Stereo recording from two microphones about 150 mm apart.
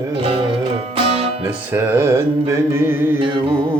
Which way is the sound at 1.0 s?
40° right (ahead or behind).